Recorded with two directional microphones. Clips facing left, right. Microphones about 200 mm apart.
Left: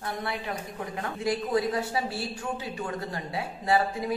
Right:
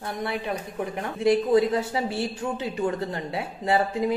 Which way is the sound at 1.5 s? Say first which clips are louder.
Right 5 dB; 25° right (ahead or behind).